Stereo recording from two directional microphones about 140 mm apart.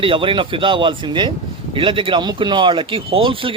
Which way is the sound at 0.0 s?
40° right (ahead or behind).